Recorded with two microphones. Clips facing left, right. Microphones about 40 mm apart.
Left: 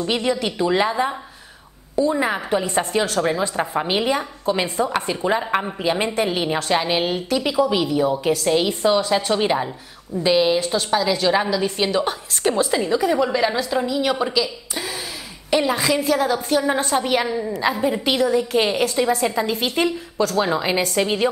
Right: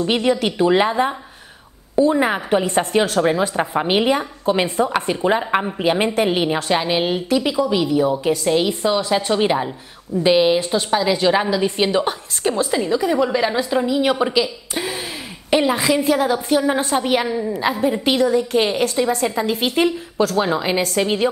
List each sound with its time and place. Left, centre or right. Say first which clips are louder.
0.0 s a woman's voice: right 3 dB; centre
3.2 s a woman's voice: right 3 dB; centre
5.0 s a woman's voice: right 3 dB; centre
5.8 s a woman's voice: right 3 dB; centre
6.5 s a woman's voice: right 1 dB; centre
12.4 s a woman's voice: even; centre; by 15.0 s right
15.5 s a woman's voice: right 2 dB; centre